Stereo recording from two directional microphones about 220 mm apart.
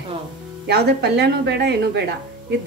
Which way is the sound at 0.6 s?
50° right (ahead or behind).